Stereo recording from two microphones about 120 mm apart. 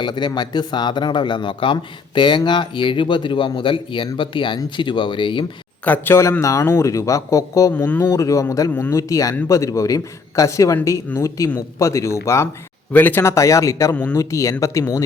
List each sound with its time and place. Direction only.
0.0 s speech: 40° left (ahead or behind)
5.8 s speech: 15° left (ahead or behind)
7.7 s speech: 15° left (ahead or behind)
8.0 s speech: 25° left (ahead or behind)
13.9 s speech: 10° left (ahead or behind)
14.2 s speech: 25° left (ahead or behind)